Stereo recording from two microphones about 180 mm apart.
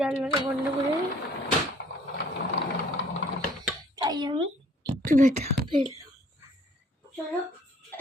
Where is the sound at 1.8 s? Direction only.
75° left (ahead or behind).